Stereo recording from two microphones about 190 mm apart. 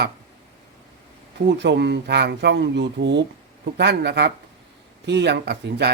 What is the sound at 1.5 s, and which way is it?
Speech, 65° right (ahead or behind).